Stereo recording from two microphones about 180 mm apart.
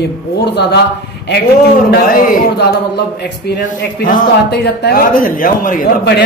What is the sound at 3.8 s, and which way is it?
A man's voice, 55° left (ahead or behind).